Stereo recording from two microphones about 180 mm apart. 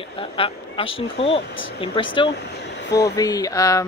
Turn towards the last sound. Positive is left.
turn(degrees=20)  # may be behind; listen again after turning